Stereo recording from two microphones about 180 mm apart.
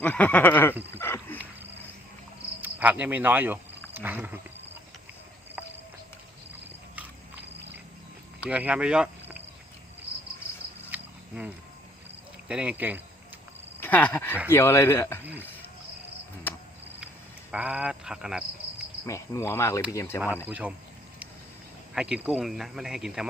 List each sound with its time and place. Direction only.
0.0 s cricket: 10° left (ahead or behind)
0.9 s a sound: 10° left (ahead or behind)
2.6 s cricket: 10° right (ahead or behind)
3.9 s speech: 10° right (ahead or behind)
8.4 s speech: 5° right (ahead or behind)
10.9 s cricket: 10° right (ahead or behind)
12.5 s speech: 5° right (ahead or behind)
13.7 s speech: 10° left (ahead or behind)
14.5 s cricket: 15° left (ahead or behind)
17.5 s speech: 5° right (ahead or behind)
19.0 s cricket: 15° left (ahead or behind)
20.5 s speech: 10° right (ahead or behind)
21.9 s speech: 5° right (ahead or behind)